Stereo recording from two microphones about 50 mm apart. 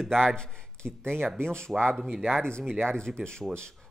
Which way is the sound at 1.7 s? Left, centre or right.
Centre.